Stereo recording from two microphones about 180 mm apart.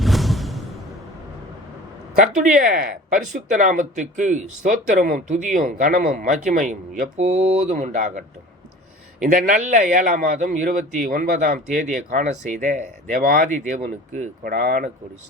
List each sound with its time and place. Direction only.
0.0 s music: centre (ahead or behind)
2.1 s a man's voice: 45° right (ahead or behind)
9.2 s a man's voice: 45° right (ahead or behind)